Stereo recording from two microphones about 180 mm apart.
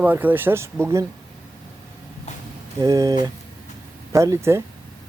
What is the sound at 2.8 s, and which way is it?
Speech, 20° right (ahead or behind).